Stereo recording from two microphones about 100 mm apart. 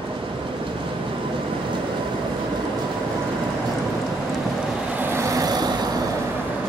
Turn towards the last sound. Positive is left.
turn(degrees=-40)  # may be behind; listen again after turning